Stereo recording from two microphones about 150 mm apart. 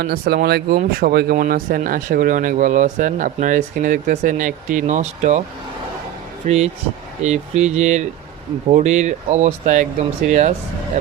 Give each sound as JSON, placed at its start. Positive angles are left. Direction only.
{"t": 0.0, "sound": "speech", "side_deg": -90}
{"t": 6.4, "sound": "speech", "side_deg": -45}